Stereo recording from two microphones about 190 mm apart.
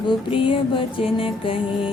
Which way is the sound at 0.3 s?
25° left (ahead or behind).